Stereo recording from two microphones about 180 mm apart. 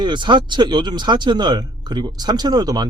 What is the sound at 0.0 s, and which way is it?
Speech, 25° right (ahead or behind).